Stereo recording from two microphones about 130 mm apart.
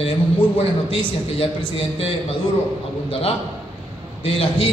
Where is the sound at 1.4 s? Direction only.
45° left (ahead or behind).